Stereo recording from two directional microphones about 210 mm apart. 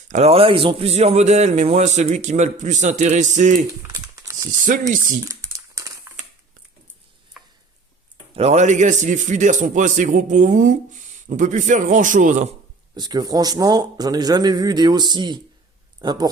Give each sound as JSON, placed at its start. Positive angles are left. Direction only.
{"t": 0.1, "sound": "a man's voice", "side_deg": -30}
{"t": 3.9, "sound": "a sound", "side_deg": -15}
{"t": 4.6, "sound": "a man's voice", "side_deg": -40}
{"t": 5.3, "sound": "crumpling", "side_deg": -15}
{"t": 8.4, "sound": "a man's voice", "side_deg": -30}
{"t": 12.9, "sound": "a man's voice", "side_deg": -20}